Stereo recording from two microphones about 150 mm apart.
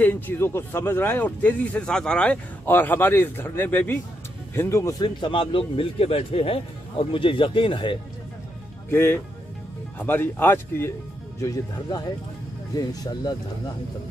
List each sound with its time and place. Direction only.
0.0 s a man's voice: 10° left (ahead or behind); by 8.0 s 35° left (ahead or behind)
8.9 s speech: 15° left (ahead or behind)